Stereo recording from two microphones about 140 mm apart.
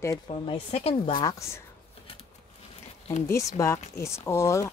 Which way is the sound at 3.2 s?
20° left (ahead or behind).